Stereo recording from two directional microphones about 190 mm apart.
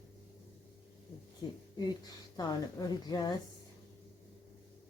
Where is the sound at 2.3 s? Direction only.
20° left (ahead or behind).